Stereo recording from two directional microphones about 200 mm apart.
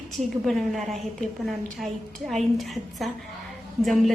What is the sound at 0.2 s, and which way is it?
A woman's voice, centre (ahead or behind).